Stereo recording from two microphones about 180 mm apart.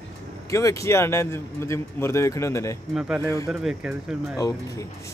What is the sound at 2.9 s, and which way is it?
Speech, 5° right (ahead or behind).